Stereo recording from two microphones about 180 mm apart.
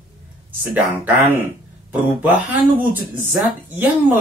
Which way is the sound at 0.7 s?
10° right (ahead or behind).